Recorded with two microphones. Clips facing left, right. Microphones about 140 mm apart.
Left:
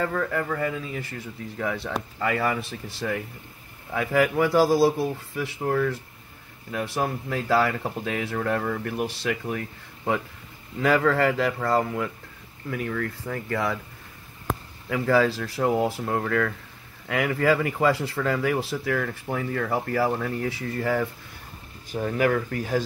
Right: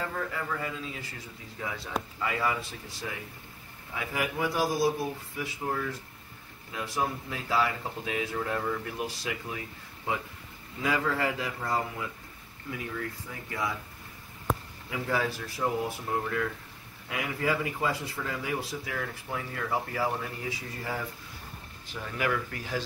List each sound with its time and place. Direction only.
0.0 s speech: 65° left (ahead or behind)
1.6 s speech: 70° left (ahead or behind)
10.8 s speech: 70° left (ahead or behind)
14.9 s speech: 90° left; by 21.0 s 65° left (ahead or behind)
21.9 s speech: 45° left (ahead or behind)